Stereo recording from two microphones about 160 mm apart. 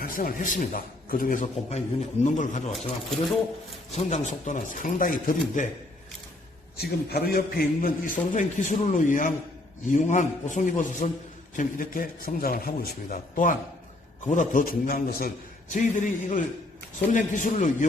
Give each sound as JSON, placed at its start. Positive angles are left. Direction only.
{"t": 0.0, "sound": "a man's voice", "side_deg": 60}
{"t": 3.9, "sound": "a man's voice", "side_deg": 45}
{"t": 6.7, "sound": "a man's voice", "side_deg": 75}
{"t": 15.7, "sound": "a man's voice", "side_deg": 55}